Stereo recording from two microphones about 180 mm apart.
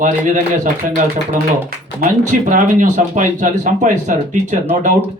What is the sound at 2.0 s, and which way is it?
Speech, 45° right (ahead or behind).